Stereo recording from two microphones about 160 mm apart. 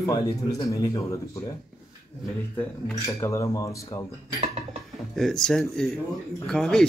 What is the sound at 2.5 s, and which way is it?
Speech, 15° left (ahead or behind).